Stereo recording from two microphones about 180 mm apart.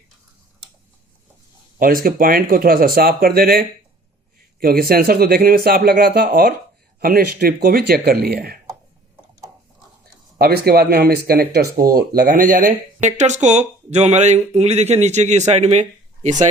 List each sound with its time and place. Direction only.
2.0 s speech: 55° right (ahead or behind)
10.3 s speech: 60° right (ahead or behind)
12.4 s speech: 45° right (ahead or behind)